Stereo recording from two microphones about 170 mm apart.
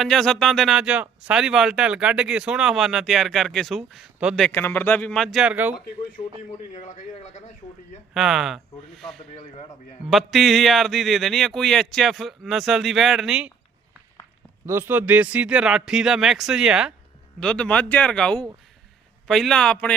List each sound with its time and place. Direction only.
0.0 s speech: centre (ahead or behind)
4.4 s speech: 10° left (ahead or behind); by 5.8 s 10° right (ahead or behind)
5.8 s speech: 55° left (ahead or behind)
6.7 s a man's voice: 45° left (ahead or behind)
8.1 s speech: centre (ahead or behind)
9.3 s speech: 40° left (ahead or behind)
10.1 s speech: centre (ahead or behind)
14.7 s speech: 15° right (ahead or behind); by 19.9 s 5° left (ahead or behind)